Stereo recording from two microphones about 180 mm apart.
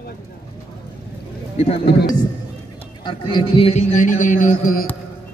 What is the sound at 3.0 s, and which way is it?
A man's voice, 25° left (ahead or behind).